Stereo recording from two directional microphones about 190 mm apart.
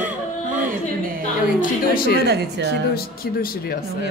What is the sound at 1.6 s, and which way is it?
Speech, 50° left (ahead or behind).